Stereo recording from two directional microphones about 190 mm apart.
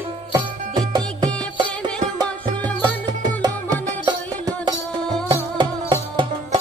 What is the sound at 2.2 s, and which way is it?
Music, 20° right (ahead or behind).